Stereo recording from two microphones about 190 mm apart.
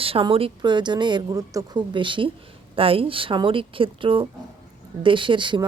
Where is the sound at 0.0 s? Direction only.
30° right (ahead or behind).